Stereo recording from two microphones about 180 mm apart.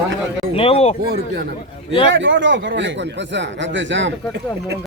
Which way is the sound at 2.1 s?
90° right.